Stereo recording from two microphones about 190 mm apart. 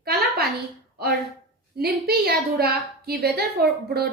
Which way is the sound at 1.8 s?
55° right (ahead or behind).